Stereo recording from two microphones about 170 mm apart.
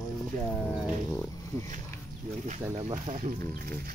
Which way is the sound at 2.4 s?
45° right (ahead or behind).